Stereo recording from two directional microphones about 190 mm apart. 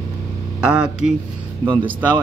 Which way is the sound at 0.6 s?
5° right (ahead or behind).